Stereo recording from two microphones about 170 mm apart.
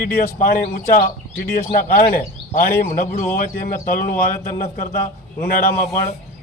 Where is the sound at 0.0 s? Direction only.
55° left (ahead or behind).